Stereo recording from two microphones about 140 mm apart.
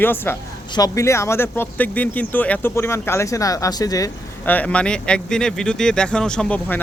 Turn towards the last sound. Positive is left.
turn(degrees=10)  # may be behind; listen again after turning